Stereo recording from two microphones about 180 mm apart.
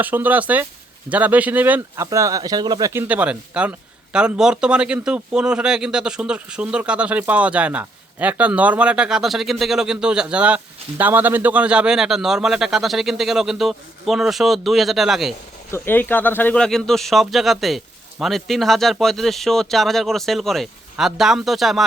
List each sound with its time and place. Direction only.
0.0 s speech: 10° right (ahead or behind)
3.1 s a man's voice: 5° right (ahead or behind)
15.7 s a man's voice: 10° left (ahead or behind)